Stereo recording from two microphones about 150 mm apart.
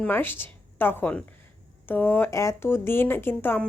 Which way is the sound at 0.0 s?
15° left (ahead or behind).